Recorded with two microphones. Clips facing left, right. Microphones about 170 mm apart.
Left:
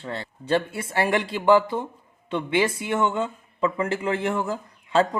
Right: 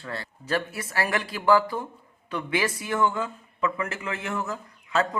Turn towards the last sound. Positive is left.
turn(degrees=30)  # may be behind; listen again after turning